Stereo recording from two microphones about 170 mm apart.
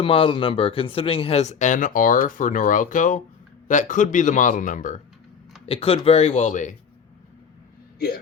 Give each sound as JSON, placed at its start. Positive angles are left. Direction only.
{"t": 0.0, "sound": "speech", "side_deg": 30}
{"t": 5.6, "sound": "speech", "side_deg": 35}